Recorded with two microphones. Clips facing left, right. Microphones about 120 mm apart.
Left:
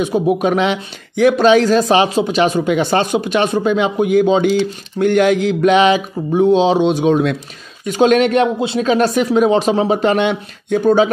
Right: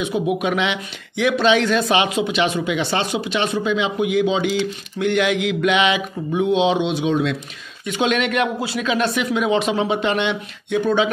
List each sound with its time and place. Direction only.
0.0 s speech: 40° left (ahead or behind)
8.8 s speech: 40° left (ahead or behind)